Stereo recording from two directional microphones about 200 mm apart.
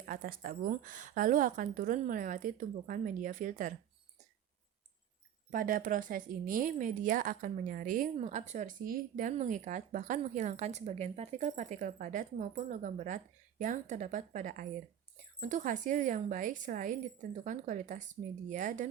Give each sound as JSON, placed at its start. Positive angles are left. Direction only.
{"t": 0.0, "sound": "a woman's voice", "side_deg": -45}
{"t": 5.5, "sound": "speech", "side_deg": -45}